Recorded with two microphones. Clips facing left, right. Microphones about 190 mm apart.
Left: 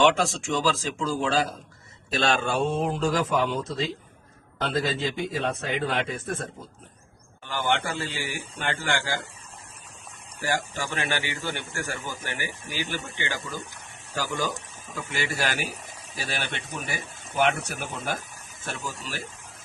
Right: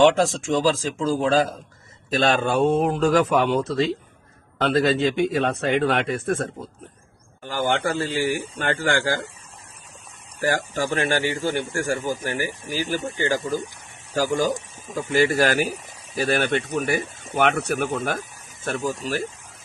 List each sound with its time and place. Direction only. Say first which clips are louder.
0.0 s speech: right 5 dB; 45° right (ahead or behind); by 6.3 s 70° right (ahead or behind)
7.4 s speech: right 4 dB; 45° right (ahead or behind)
10.8 s speech: right 7 dB; 40° right (ahead or behind)